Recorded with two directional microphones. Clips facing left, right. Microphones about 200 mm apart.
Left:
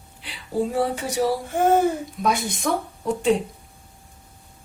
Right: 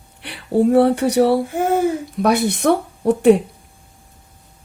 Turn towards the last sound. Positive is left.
turn(degrees=-65)  # may be behind; listen again after turning